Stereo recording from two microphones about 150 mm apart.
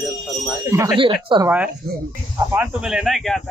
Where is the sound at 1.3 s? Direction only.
35° right (ahead or behind).